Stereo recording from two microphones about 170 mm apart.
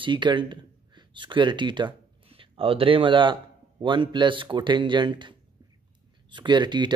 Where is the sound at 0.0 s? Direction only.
25° right (ahead or behind).